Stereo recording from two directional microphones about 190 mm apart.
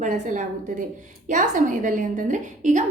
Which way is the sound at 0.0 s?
40° right (ahead or behind).